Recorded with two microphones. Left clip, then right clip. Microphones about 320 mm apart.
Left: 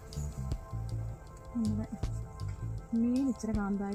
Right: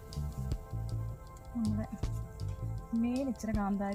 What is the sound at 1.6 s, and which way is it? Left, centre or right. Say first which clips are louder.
Music: even; centre.